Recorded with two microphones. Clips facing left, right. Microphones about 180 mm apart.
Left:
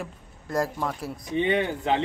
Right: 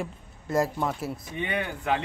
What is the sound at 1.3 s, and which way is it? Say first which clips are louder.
Speech: left 9 dB; 25° left (ahead or behind).